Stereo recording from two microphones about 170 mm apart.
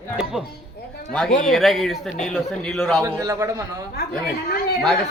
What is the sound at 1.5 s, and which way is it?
A man's voice, centre (ahead or behind).